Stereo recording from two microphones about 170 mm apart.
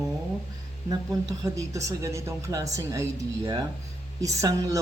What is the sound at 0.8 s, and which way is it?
Speech, 20° right (ahead or behind).